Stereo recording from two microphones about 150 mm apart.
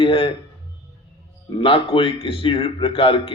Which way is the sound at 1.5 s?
35° left (ahead or behind).